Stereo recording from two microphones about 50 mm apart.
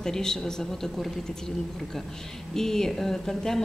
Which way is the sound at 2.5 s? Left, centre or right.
Centre.